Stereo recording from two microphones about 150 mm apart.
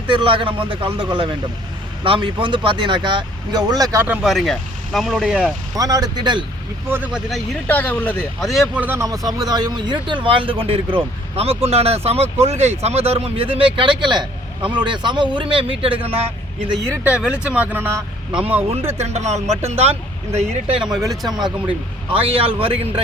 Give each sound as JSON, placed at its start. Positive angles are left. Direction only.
{"t": 0.1, "sound": "speech", "side_deg": -35}
{"t": 4.0, "sound": "speech", "side_deg": -10}
{"t": 5.7, "sound": "speech", "side_deg": -25}
{"t": 6.8, "sound": "speech", "side_deg": -15}
{"t": 7.7, "sound": "speech", "side_deg": 10}
{"t": 8.7, "sound": "speech", "side_deg": -10}
{"t": 9.0, "sound": "speech", "side_deg": -25}
{"t": 16.9, "sound": "speech", "side_deg": -10}
{"t": 18.9, "sound": "speech", "side_deg": -45}
{"t": 20.7, "sound": "speech", "side_deg": -5}
{"t": 21.2, "sound": "speech", "side_deg": -25}
{"t": 22.1, "sound": "speech", "side_deg": -40}